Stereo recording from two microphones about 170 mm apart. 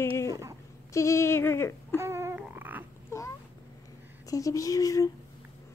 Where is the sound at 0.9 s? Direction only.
15° left (ahead or behind).